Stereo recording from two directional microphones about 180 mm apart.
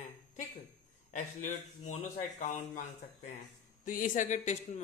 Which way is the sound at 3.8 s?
50° left (ahead or behind).